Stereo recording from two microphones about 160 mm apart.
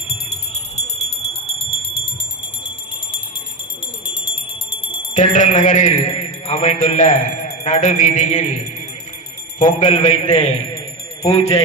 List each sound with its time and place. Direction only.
4.0 s fire alarm: 35° left (ahead or behind)
5.1 s a man's voice: 50° left (ahead or behind)
9.6 s a man's voice: 50° left (ahead or behind)